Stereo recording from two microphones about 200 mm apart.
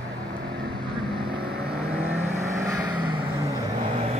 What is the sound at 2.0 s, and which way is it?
Vehicle, 15° right (ahead or behind).